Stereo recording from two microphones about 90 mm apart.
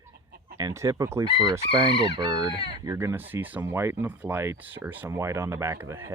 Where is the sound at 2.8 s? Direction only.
35° right (ahead or behind).